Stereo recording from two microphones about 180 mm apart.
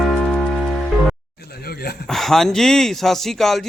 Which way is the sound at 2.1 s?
Centre (ahead or behind).